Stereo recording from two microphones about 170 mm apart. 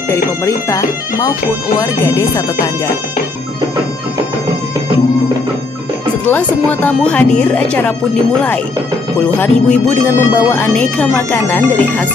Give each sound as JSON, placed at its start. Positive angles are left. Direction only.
{"t": 0.1, "sound": "speech", "side_deg": 20}
{"t": 6.2, "sound": "speech", "side_deg": 10}
{"t": 9.2, "sound": "speech", "side_deg": 10}